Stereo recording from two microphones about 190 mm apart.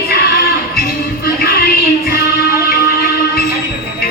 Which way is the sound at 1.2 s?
55° left (ahead or behind).